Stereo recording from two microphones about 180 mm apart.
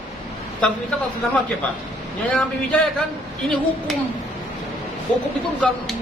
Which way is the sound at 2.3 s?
5° left (ahead or behind).